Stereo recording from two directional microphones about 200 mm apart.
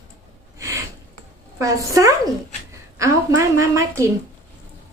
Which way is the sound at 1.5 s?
15° right (ahead or behind).